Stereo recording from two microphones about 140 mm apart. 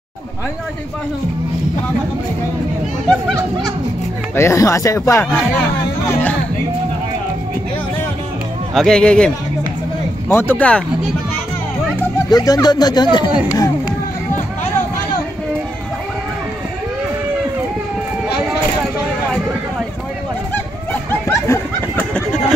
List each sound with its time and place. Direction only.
4.4 s speech: 20° left (ahead or behind)
8.7 s speech: 5° left (ahead or behind)
10.3 s speech: 15° left (ahead or behind)
12.3 s speech: 30° left (ahead or behind)
13.3 s speech: 10° right (ahead or behind)
20.5 s a sound: 15° left (ahead or behind)